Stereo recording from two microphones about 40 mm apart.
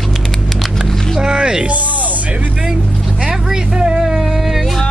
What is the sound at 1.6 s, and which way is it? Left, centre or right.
Music, right.